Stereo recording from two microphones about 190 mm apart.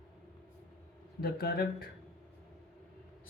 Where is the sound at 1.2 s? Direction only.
55° left (ahead or behind).